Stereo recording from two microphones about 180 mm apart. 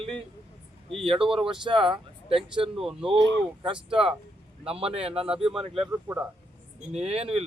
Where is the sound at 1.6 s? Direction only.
25° right (ahead or behind).